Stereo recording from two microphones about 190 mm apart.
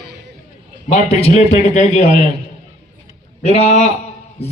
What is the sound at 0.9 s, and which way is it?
Speech, 35° left (ahead or behind).